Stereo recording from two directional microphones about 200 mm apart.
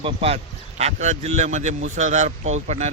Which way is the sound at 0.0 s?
30° right (ahead or behind).